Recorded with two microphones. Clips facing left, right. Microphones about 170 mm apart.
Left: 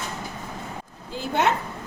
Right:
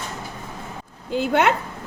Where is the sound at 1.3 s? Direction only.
65° right (ahead or behind).